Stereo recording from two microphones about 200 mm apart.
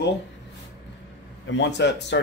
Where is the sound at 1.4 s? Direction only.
60° left (ahead or behind).